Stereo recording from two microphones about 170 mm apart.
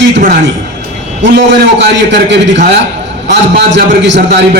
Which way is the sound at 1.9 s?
90° right.